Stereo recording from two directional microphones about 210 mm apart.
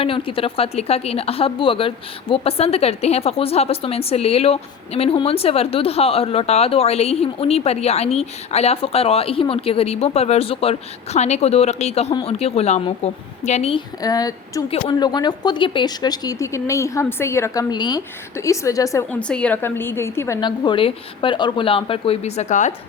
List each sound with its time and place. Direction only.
0.0 s a woman's voice: 25° left (ahead or behind)